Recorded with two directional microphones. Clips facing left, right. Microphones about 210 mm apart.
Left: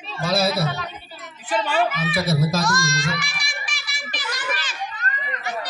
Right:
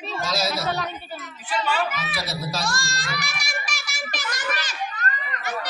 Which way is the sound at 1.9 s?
55° left (ahead or behind).